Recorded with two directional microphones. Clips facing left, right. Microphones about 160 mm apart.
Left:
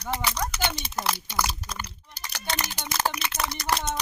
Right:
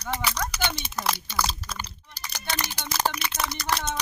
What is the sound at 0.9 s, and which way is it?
Speech, 20° left (ahead or behind).